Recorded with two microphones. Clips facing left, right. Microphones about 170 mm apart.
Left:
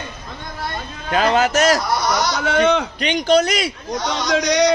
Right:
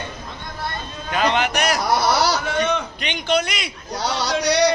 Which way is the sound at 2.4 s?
90° left.